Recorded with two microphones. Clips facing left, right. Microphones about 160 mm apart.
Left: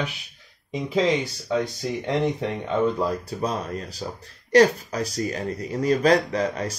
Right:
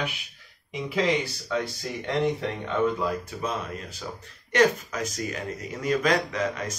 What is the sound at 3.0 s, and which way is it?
Speech, 35° left (ahead or behind).